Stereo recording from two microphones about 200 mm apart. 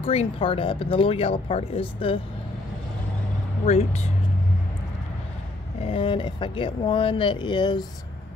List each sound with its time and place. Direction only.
0.0 s speech: 30° left (ahead or behind)
3.6 s speech: 30° left (ahead or behind)
5.8 s speech: 30° left (ahead or behind)